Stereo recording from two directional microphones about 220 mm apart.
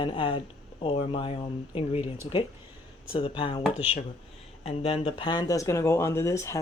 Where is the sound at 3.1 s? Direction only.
25° left (ahead or behind).